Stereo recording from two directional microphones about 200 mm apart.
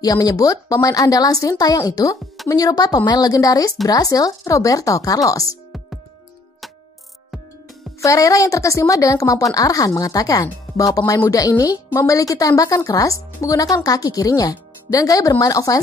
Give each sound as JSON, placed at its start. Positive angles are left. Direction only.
{"t": 0.0, "sound": "a woman's voice", "side_deg": 20}
{"t": 8.0, "sound": "a woman's voice", "side_deg": 15}